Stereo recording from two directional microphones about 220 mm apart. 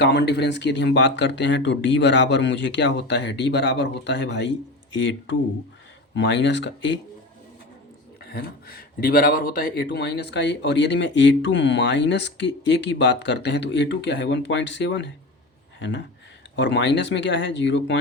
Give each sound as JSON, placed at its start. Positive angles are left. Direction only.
{"t": 0.0, "sound": "speech", "side_deg": 50}
{"t": 8.2, "sound": "speech", "side_deg": 45}
{"t": 16.6, "sound": "speech", "side_deg": 55}